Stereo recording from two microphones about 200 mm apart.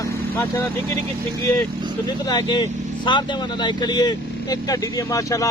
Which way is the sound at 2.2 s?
20° left (ahead or behind).